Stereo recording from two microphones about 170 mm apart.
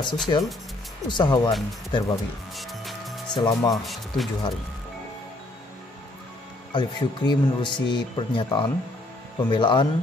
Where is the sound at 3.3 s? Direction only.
25° left (ahead or behind).